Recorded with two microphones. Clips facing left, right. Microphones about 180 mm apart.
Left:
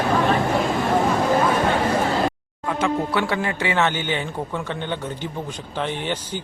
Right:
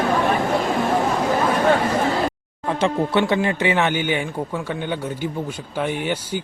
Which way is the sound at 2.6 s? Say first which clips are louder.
Right 2 dB; 30° right (ahead or behind).